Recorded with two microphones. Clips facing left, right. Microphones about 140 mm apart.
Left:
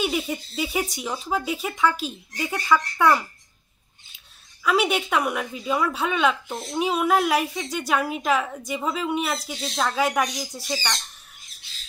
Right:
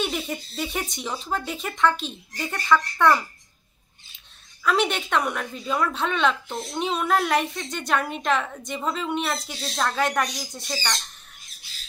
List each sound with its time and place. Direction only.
0.0 s speech: 5° left (ahead or behind)
4.6 s a woman's voice: 5° left (ahead or behind)